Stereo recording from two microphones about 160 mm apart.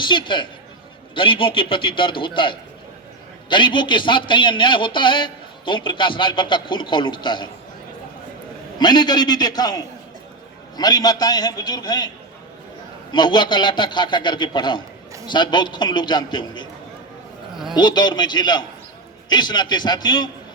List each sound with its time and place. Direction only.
0.0 s speech: 30° left (ahead or behind)
8.8 s a man's voice: 25° left (ahead or behind)
17.7 s a man's voice: 25° left (ahead or behind)